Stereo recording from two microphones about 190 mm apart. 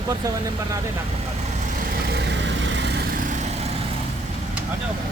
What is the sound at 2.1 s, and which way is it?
Vehicle, 65° right (ahead or behind).